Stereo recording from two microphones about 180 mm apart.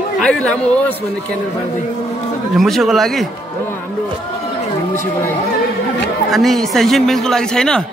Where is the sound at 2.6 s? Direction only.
Centre (ahead or behind).